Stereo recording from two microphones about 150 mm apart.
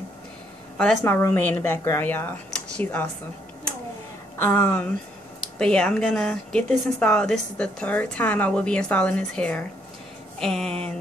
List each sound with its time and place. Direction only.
0.7 s speech: 10° left (ahead or behind)
4.4 s speech: 15° left (ahead or behind)